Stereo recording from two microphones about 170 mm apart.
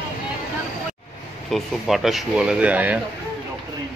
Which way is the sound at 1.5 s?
Centre (ahead or behind).